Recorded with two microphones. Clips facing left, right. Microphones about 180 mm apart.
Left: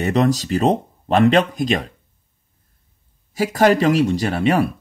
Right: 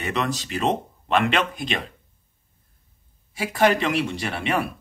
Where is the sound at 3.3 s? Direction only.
40° left (ahead or behind).